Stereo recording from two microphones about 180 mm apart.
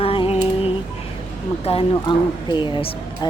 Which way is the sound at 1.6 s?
30° left (ahead or behind).